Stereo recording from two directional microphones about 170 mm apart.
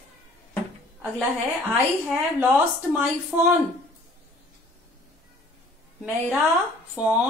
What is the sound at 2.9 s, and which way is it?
Speech, 10° right (ahead or behind).